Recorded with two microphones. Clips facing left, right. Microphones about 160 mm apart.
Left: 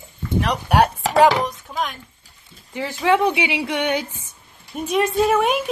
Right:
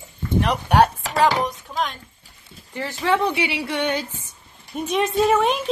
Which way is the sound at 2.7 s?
15° left (ahead or behind).